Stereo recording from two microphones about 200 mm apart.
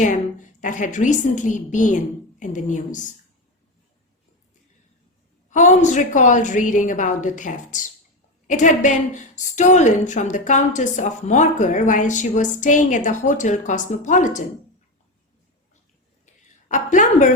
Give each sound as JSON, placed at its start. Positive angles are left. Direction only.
{"t": 0.6, "sound": "a woman's voice", "side_deg": 40}
{"t": 5.5, "sound": "a woman's voice", "side_deg": 35}
{"t": 16.2, "sound": "a sound", "side_deg": 40}